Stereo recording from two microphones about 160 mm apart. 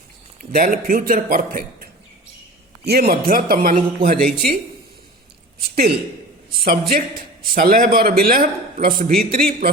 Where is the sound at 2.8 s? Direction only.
80° right; by 3.8 s 65° right (ahead or behind).